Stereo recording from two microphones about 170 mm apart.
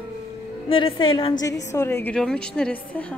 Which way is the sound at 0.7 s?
30° left (ahead or behind).